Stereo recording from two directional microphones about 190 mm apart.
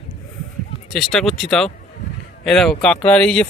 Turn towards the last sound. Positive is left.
turn(degrees=5)  # may be behind; listen again after turning